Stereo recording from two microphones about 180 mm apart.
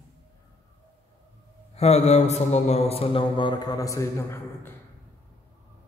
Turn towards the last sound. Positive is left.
turn(degrees=15)  # may be behind; listen again after turning